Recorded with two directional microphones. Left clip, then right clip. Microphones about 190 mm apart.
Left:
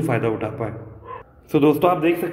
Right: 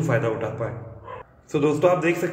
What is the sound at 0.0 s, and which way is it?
A man's voice, 30° left (ahead or behind).